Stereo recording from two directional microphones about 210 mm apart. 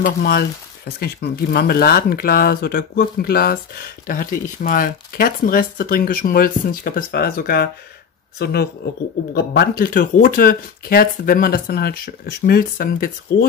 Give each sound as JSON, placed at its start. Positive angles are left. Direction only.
{"t": 0.0, "sound": "speech", "side_deg": 45}